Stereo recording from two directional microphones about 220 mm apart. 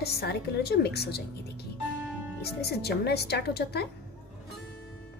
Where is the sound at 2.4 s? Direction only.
45° left (ahead or behind).